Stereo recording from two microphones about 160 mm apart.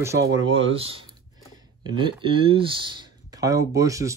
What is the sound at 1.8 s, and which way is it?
Speech, 30° right (ahead or behind).